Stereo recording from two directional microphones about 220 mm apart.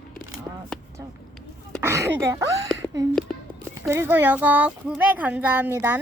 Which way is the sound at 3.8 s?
10° right (ahead or behind).